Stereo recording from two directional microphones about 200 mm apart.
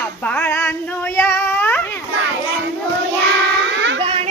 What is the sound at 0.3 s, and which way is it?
Female singing, 10° left (ahead or behind).